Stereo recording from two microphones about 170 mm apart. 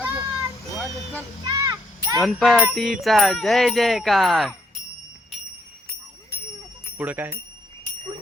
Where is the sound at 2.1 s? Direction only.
Centre (ahead or behind).